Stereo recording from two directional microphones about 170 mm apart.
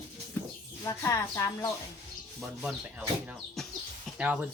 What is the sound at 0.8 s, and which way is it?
Speech, 15° left (ahead or behind).